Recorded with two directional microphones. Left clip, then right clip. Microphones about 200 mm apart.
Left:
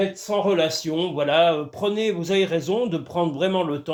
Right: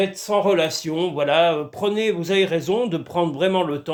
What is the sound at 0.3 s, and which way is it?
Speech, 20° right (ahead or behind).